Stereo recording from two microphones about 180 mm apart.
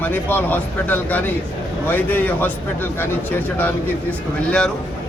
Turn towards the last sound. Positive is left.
turn(degrees=5)  # may be behind; listen again after turning